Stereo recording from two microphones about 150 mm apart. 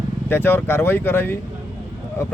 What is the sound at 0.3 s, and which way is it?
Speech, 15° left (ahead or behind).